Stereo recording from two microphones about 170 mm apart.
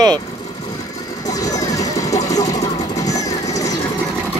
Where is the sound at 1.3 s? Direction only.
20° left (ahead or behind).